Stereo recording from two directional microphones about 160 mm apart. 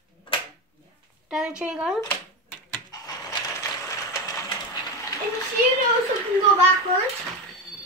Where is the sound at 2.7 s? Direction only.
20° left (ahead or behind).